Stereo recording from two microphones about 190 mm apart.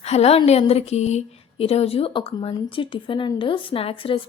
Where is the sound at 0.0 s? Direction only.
35° left (ahead or behind).